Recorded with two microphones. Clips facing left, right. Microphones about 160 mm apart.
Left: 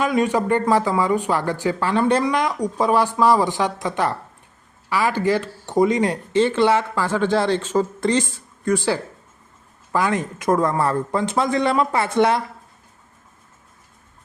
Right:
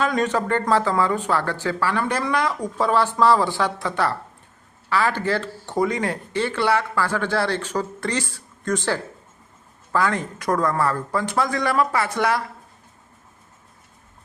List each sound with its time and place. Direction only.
0.0 s speech: 10° left (ahead or behind)